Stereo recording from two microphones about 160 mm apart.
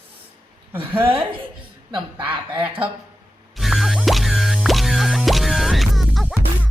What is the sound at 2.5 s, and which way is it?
Speech, 35° right (ahead or behind).